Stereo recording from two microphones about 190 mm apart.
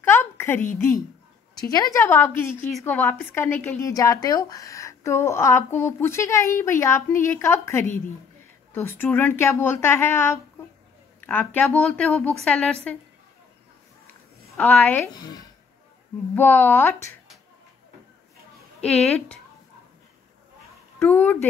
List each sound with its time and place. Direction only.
0.0 s a sound: 15° left (ahead or behind)
1.6 s a woman's voice: 20° left (ahead or behind)
14.8 s a woman's voice: 10° left (ahead or behind)
15.1 s a woman's voice: 20° left (ahead or behind)
18.8 s a woman's voice: 5° left (ahead or behind)
21.1 s a woman's voice: 10° left (ahead or behind)